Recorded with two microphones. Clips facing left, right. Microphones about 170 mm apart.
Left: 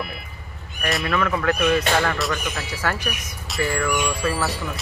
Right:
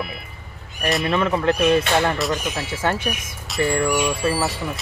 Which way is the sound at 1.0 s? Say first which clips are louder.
Right 2 dB; 25° right (ahead or behind).